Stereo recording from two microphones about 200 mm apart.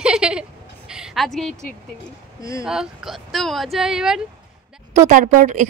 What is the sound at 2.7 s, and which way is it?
A woman's voice, centre (ahead or behind).